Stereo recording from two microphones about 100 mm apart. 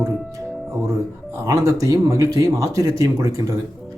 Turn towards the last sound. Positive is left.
turn(degrees=-35)  # may be behind; listen again after turning